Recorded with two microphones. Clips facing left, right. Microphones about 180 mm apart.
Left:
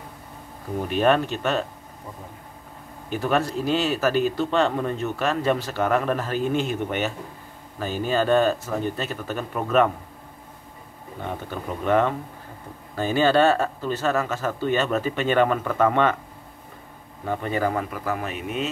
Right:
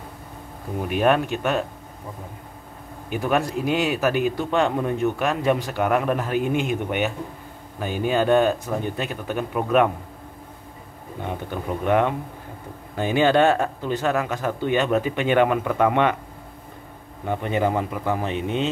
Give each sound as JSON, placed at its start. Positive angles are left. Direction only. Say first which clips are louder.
{"t": 0.8, "sound": "speech", "louder": "even", "side_deg": -10}
{"t": 3.1, "sound": "speech", "louder": "right 1 dB", "side_deg": -15}
{"t": 11.2, "sound": "speech", "louder": "right 2 dB", "side_deg": -15}
{"t": 17.2, "sound": "speech", "louder": "right 2 dB", "side_deg": -15}